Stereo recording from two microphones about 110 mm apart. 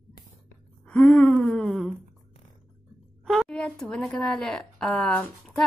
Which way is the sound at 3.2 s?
Centre (ahead or behind).